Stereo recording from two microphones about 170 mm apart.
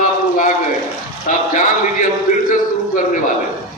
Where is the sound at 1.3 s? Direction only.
50° left (ahead or behind).